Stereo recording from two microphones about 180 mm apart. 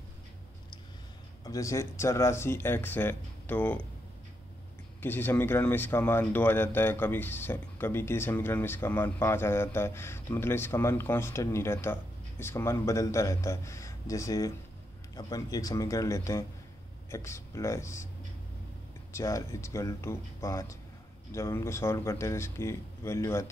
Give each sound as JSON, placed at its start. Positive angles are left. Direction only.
{"t": 1.4, "sound": "speech", "side_deg": 20}
{"t": 5.0, "sound": "a man's voice", "side_deg": 10}
{"t": 19.1, "sound": "speech", "side_deg": 15}